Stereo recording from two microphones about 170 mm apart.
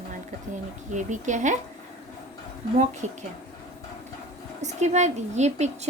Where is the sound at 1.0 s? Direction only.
45° right (ahead or behind).